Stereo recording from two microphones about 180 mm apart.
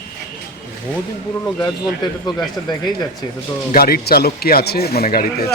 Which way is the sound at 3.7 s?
55° left (ahead or behind).